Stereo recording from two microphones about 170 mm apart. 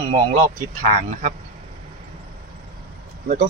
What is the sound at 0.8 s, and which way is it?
Speech, 50° right (ahead or behind).